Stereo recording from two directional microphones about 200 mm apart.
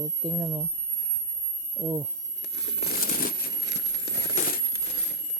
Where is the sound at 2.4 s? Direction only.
60° left (ahead or behind).